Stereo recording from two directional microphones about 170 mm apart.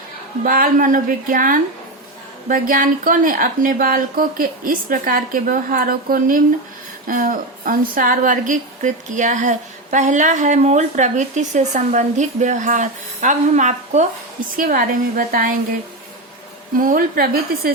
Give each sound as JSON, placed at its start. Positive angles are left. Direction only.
{"t": 0.4, "sound": "a woman's voice", "side_deg": -55}
{"t": 14.5, "sound": "a woman's voice", "side_deg": -55}
{"t": 16.7, "sound": "a woman's voice", "side_deg": -55}